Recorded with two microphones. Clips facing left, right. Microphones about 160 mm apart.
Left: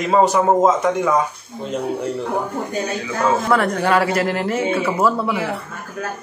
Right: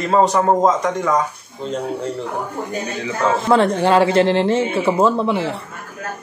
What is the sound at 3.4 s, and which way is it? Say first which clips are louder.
Speech: right 3 dB; 25° right (ahead or behind).